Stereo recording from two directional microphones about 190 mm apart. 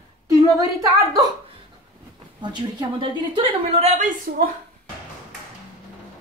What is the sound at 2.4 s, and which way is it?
A woman's voice, 25° right (ahead or behind).